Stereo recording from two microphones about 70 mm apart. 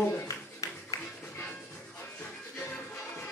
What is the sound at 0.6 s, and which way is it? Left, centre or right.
Music, left.